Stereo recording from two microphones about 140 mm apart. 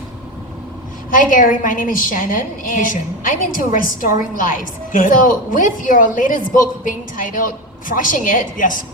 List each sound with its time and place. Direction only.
1.1 s a woman's voice: 75° left (ahead or behind)